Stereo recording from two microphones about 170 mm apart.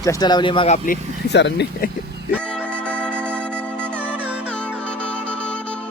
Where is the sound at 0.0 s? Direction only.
20° left (ahead or behind).